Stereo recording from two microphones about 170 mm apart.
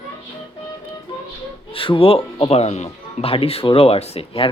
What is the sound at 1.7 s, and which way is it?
Speech, 30° left (ahead or behind).